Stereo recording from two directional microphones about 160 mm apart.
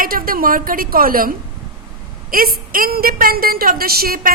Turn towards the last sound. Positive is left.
turn(degrees=-70)  # may be behind; listen again after turning